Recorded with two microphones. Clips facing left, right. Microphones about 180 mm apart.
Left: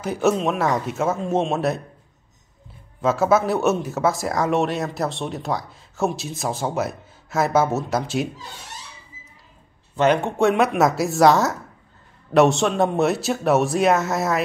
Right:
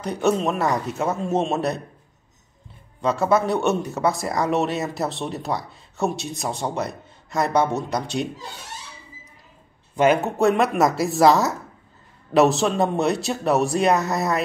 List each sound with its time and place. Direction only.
0.0 s speech: centre (ahead or behind)
3.0 s speech: 5° left (ahead or behind)
9.9 s speech: 5° right (ahead or behind)